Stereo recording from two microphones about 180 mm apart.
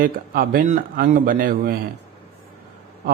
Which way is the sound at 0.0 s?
50° right (ahead or behind).